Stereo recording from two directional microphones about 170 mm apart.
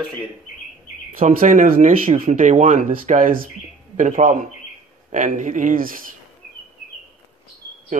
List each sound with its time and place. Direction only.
1.1 s speech: 55° right (ahead or behind)
7.9 s speech: 50° right (ahead or behind)